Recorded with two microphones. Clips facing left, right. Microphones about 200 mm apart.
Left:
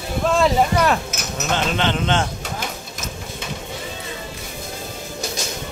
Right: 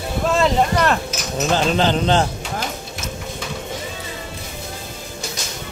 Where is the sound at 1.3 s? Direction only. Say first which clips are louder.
Right 4 dB; 35° right (ahead or behind).